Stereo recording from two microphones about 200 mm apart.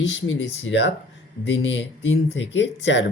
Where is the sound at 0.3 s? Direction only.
65° left (ahead or behind).